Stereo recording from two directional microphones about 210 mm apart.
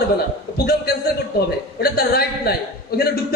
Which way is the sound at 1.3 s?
45° left (ahead or behind).